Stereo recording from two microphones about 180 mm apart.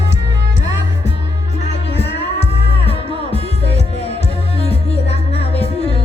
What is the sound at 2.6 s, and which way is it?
Music, 35° left (ahead or behind).